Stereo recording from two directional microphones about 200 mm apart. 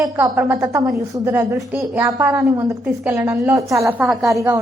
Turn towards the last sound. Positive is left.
turn(degrees=-15)  # may be behind; listen again after turning